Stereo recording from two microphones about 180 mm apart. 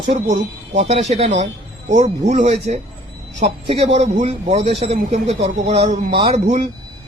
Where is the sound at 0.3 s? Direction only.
45° right (ahead or behind).